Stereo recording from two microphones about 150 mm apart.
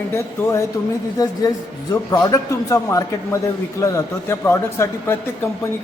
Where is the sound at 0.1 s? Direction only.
20° left (ahead or behind).